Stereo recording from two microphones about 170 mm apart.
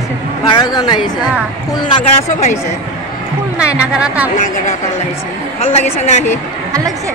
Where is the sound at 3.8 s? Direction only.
5° right (ahead or behind).